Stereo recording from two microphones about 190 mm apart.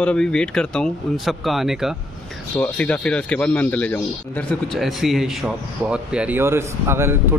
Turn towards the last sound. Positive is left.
turn(degrees=-15)  # may be behind; listen again after turning